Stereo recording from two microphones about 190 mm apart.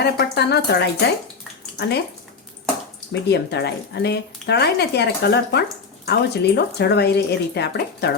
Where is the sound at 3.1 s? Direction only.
60° left (ahead or behind).